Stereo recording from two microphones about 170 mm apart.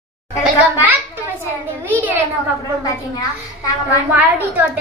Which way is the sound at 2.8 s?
25° left (ahead or behind).